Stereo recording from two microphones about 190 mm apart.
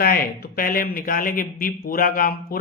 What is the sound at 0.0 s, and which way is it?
Speech, 50° left (ahead or behind).